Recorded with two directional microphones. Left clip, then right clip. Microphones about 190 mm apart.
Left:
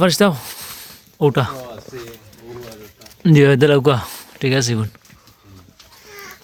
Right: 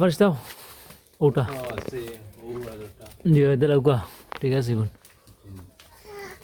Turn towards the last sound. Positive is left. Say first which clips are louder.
# left 7 dB
turn(degrees=15)  # may be behind; listen again after turning